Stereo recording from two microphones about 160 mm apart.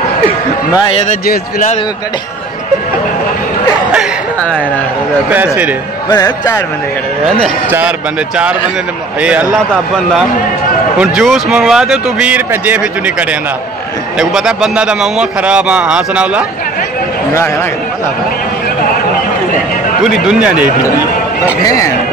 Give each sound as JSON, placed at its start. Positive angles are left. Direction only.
{"t": 1.0, "sound": "a man's voice", "side_deg": 60}
{"t": 5.3, "sound": "a man's voice", "side_deg": -10}
{"t": 6.0, "sound": "speech", "side_deg": 25}
{"t": 9.2, "sound": "a man's voice", "side_deg": -5}
{"t": 11.0, "sound": "a man's voice", "side_deg": -5}
{"t": 14.1, "sound": "a man's voice", "side_deg": -5}
{"t": 21.6, "sound": "speech", "side_deg": 20}